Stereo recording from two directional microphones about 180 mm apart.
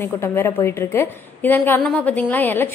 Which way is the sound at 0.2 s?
15° left (ahead or behind).